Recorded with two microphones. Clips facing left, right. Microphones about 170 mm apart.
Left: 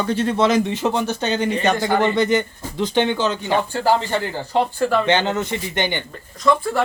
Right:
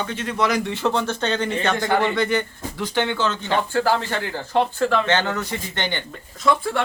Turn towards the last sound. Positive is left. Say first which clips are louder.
# left 2 dB
turn(degrees=0)  # may be behind; listen again after turning